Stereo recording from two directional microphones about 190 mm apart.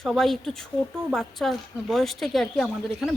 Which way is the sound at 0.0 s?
Centre (ahead or behind).